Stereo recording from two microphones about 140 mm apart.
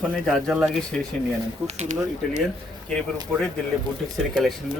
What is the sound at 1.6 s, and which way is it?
Speech, 60° right (ahead or behind).